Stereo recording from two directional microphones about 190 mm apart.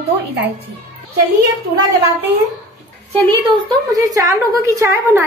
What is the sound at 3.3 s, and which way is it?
A woman's voice, 20° right (ahead or behind).